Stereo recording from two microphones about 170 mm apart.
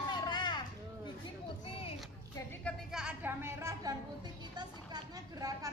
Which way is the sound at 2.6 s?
5° right (ahead or behind).